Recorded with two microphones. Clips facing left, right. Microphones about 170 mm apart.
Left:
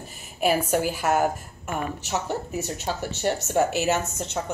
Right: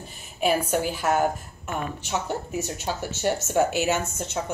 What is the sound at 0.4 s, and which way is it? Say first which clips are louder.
A woman's voice: left 1 dB; 5° left (ahead or behind).